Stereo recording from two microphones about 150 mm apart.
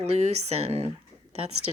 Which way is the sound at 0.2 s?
45° right (ahead or behind).